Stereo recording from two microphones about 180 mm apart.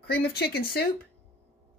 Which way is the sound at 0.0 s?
60° left (ahead or behind).